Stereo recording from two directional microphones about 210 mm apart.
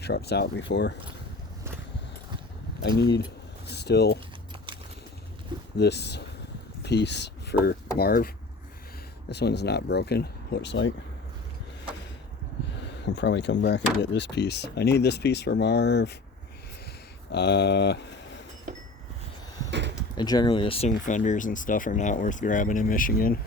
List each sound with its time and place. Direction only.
0.0 s speech: 50° left (ahead or behind)
3.7 s speech: 50° left (ahead or behind)
5.7 s speech: 55° left (ahead or behind)
9.3 s speech: 50° left (ahead or behind)
12.7 s speech: 55° left (ahead or behind)
17.3 s speech: 55° left (ahead or behind)
20.0 s speech: 20° left (ahead or behind)
20.9 s speech: 40° left (ahead or behind)